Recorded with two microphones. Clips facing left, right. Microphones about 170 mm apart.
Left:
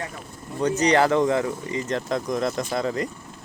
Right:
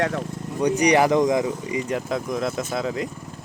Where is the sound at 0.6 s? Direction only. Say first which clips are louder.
Right 1 dB; 15° right (ahead or behind).